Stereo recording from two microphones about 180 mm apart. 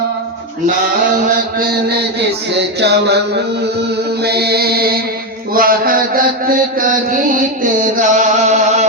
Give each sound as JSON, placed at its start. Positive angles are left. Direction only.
{"t": 1.1, "sound": "mantra", "side_deg": -55}
{"t": 2.8, "sound": "a sound", "side_deg": -70}
{"t": 4.2, "sound": "mantra", "side_deg": -65}